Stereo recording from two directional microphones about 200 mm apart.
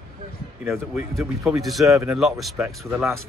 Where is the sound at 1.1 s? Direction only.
Centre (ahead or behind).